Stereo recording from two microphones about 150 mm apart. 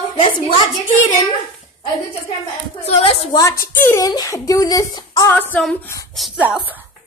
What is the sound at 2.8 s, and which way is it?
Speech, 40° left (ahead or behind).